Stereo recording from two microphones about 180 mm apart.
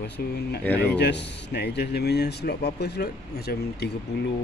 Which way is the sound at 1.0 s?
70° left (ahead or behind).